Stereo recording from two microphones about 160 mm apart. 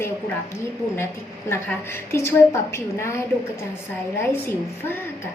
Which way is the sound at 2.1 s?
15° left (ahead or behind).